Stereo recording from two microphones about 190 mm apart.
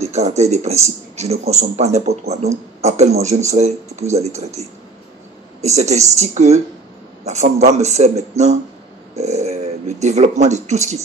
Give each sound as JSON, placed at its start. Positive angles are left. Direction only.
{"t": 0.0, "sound": "speech", "side_deg": -35}
{"t": 5.6, "sound": "speech", "side_deg": -35}